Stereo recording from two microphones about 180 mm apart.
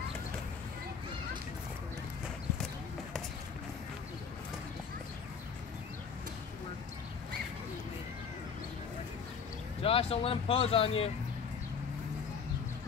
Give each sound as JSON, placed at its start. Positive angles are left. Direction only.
{"t": 9.8, "sound": "speech", "side_deg": 30}